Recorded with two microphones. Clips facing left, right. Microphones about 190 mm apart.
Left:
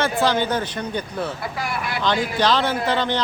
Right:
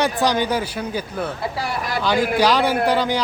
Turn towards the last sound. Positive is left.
turn(degrees=-10)  # may be behind; listen again after turning